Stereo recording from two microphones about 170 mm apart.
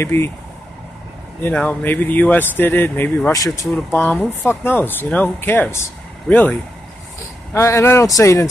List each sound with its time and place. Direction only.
0.0 s speech: 15° left (ahead or behind)
1.4 s speech: 10° left (ahead or behind)